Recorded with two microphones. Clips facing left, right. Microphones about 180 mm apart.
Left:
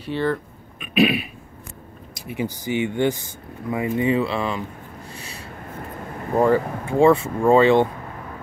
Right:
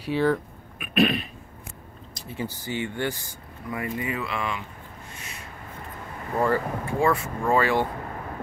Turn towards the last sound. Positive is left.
turn(degrees=25)  # may be behind; listen again after turning